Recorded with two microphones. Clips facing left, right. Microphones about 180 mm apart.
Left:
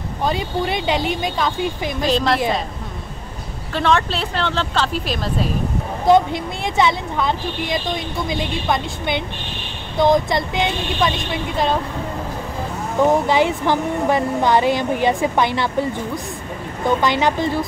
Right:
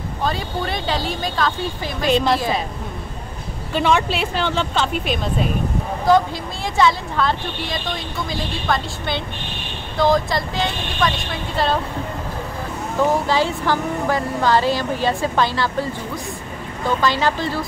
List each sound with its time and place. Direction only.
0.2 s speech: 20° left (ahead or behind)
2.0 s speech: centre (ahead or behind)
3.7 s speech: 5° right (ahead or behind)
6.0 s speech: 20° left (ahead or behind)
13.0 s speech: 20° left (ahead or behind)